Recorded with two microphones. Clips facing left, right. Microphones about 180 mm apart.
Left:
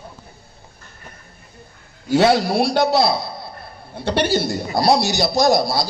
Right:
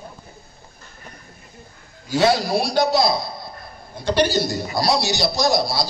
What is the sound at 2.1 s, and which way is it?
A man's voice, 60° left (ahead or behind).